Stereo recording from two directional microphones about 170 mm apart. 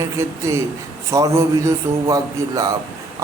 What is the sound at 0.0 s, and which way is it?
A man's voice, 15° right (ahead or behind).